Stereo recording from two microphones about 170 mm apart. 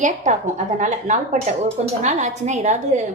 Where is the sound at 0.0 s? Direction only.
45° right (ahead or behind).